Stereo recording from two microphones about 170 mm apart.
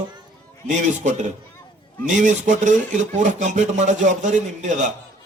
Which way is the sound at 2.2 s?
45° right (ahead or behind).